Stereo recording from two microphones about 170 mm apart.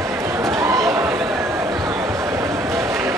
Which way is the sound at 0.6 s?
20° right (ahead or behind).